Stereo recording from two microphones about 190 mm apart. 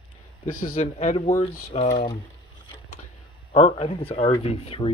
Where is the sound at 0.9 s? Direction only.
35° left (ahead or behind).